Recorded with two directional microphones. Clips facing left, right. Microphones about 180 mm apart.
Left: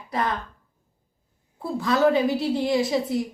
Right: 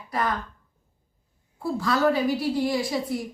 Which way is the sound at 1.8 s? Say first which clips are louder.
Left 3 dB; 20° left (ahead or behind).